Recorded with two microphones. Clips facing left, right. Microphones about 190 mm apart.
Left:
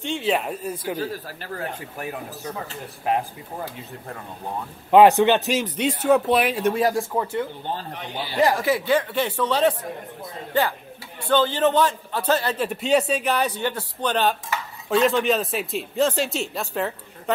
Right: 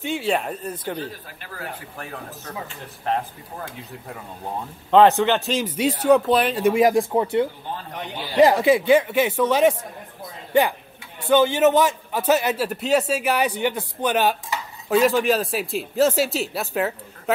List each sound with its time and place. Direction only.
0.0 s speech: 5° right (ahead or behind)
2.0 s speech: 15° left (ahead or behind)
4.9 s speech: 15° left (ahead or behind)
5.7 s speech: 5° right (ahead or behind)
6.6 s a man's voice: 15° right (ahead or behind)
11.2 s a man's voice: 10° right (ahead or behind)